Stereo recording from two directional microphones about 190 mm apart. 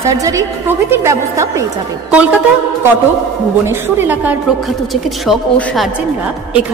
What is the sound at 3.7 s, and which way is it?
A woman's voice, 10° right (ahead or behind).